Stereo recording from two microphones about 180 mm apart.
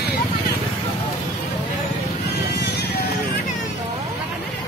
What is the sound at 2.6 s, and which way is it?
Music, 65° left (ahead or behind).